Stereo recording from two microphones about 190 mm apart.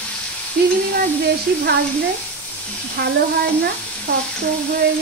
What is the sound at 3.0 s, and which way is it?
Speech, 60° right (ahead or behind).